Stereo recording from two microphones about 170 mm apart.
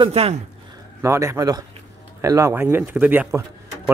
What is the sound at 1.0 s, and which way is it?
A man's voice, 15° right (ahead or behind).